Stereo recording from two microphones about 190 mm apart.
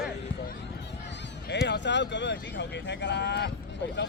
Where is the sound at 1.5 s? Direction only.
65° left (ahead or behind).